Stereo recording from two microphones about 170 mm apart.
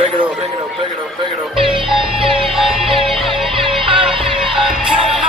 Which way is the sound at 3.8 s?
30° right (ahead or behind).